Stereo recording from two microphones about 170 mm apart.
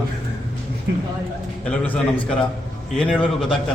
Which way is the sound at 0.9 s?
90° right.